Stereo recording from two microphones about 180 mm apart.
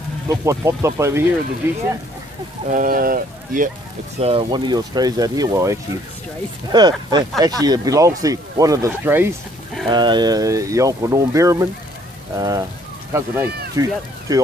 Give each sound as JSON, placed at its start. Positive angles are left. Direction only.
{"t": 0.3, "sound": "speech", "side_deg": -15}
{"t": 2.7, "sound": "speech", "side_deg": -50}
{"t": 4.2, "sound": "speech", "side_deg": -30}
{"t": 9.8, "sound": "speech", "side_deg": -25}